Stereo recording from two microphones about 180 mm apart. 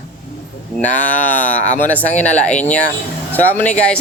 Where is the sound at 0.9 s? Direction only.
10° left (ahead or behind).